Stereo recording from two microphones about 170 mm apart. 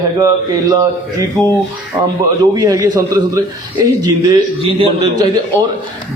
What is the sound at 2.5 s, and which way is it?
A man's voice, 20° right (ahead or behind).